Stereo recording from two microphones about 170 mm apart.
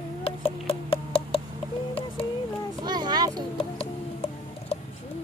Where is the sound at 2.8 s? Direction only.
25° right (ahead or behind).